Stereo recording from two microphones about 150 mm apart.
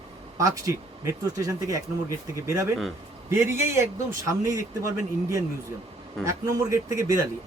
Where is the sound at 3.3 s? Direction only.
15° right (ahead or behind).